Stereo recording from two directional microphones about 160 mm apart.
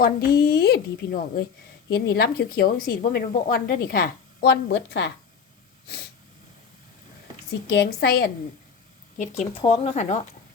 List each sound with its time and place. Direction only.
0.0 s a woman's voice: 70° left (ahead or behind)
1.9 s a woman's voice: 85° left
7.7 s a woman's voice: 85° left
9.1 s speech: 50° left (ahead or behind)